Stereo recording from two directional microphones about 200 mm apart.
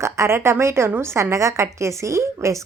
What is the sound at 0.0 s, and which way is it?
Speech, 15° right (ahead or behind).